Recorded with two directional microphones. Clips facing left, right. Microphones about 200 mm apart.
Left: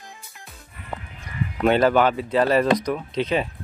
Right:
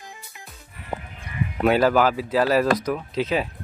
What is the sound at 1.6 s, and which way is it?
Speech, 5° right (ahead or behind).